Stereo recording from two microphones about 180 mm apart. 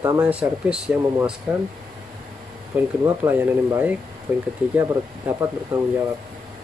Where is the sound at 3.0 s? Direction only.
15° right (ahead or behind).